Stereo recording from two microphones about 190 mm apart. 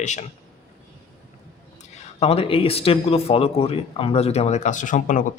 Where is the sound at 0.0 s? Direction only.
40° left (ahead or behind).